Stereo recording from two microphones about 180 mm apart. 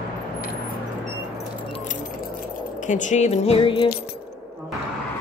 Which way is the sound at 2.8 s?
45° left (ahead or behind).